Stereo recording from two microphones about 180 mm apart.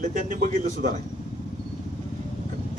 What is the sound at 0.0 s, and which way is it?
Speech, 45° right (ahead or behind).